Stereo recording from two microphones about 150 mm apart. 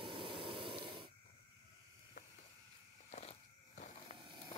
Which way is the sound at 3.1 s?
50° left (ahead or behind).